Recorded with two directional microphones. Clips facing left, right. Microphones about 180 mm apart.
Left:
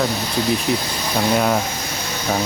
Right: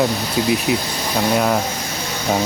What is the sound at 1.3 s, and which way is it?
Speech, centre (ahead or behind).